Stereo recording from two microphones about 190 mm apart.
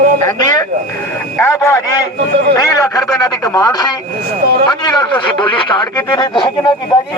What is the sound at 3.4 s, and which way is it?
Speech, 20° left (ahead or behind).